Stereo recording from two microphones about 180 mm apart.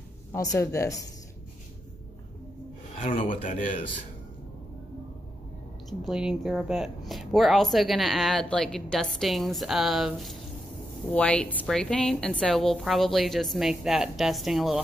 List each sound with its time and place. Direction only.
0.3 s speech: 15° left (ahead or behind)
3.3 s speech: 45° left (ahead or behind)
5.9 s speech: centre (ahead or behind)